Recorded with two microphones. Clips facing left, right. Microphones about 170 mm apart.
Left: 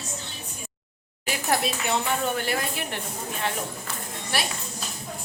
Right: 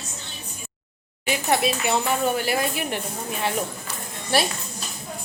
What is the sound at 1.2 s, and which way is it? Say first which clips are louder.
Speech: right 4 dB; centre (ahead or behind).